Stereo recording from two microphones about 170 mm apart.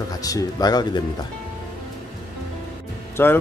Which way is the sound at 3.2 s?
15° left (ahead or behind).